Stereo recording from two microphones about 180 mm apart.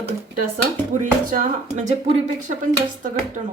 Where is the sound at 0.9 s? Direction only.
45° right (ahead or behind).